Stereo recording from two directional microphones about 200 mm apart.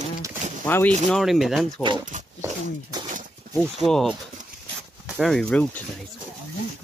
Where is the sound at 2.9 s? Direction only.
20° right (ahead or behind).